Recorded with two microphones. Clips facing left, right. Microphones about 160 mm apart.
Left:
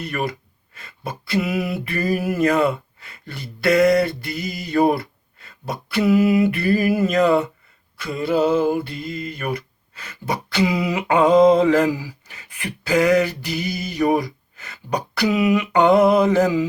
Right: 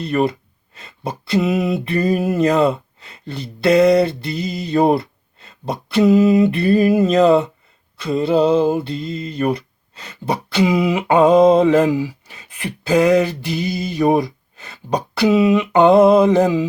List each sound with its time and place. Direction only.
0.0 s speech: 25° right (ahead or behind)